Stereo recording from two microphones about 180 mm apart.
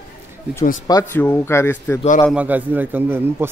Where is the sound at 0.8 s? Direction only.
15° left (ahead or behind).